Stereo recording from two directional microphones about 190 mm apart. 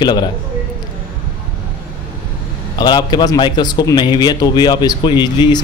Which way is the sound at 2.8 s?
20° left (ahead or behind).